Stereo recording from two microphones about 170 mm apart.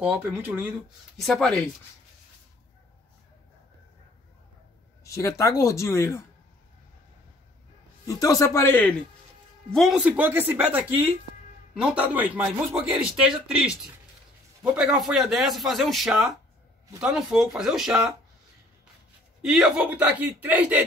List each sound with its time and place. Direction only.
0.0 s speech: 10° right (ahead or behind)
1.1 s a man's voice: centre (ahead or behind)
5.0 s speech: 20° left (ahead or behind)
8.1 s speech: 20° left (ahead or behind)
9.7 s a man's voice: centre (ahead or behind)
19.4 s speech: centre (ahead or behind)